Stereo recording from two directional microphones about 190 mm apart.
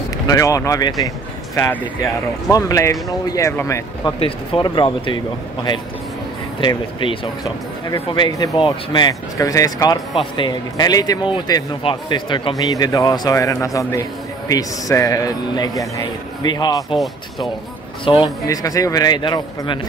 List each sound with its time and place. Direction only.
0.3 s speech: 15° left (ahead or behind)
1.0 s a sound: 15° left (ahead or behind)
2.5 s a man's voice: 15° left (ahead or behind)
18.0 s a man's voice: 25° left (ahead or behind)